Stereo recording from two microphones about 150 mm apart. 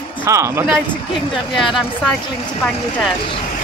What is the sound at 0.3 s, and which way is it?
Speech, 20° right (ahead or behind).